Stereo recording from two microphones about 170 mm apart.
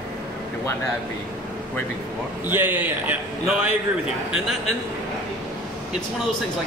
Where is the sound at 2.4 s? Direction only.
10° right (ahead or behind).